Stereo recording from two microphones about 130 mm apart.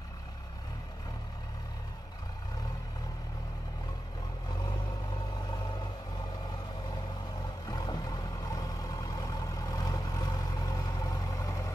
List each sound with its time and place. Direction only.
4.5 s vehicle: 35° left (ahead or behind)
7.6 s vehicle: 30° left (ahead or behind)